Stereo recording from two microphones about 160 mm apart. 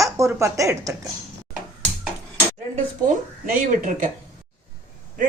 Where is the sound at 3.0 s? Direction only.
60° right (ahead or behind).